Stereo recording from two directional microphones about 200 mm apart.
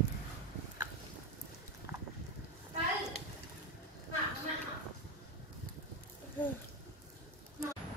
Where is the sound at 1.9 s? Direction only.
15° right (ahead or behind).